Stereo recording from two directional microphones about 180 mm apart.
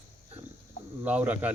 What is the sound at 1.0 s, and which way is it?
Speech, 10° right (ahead or behind).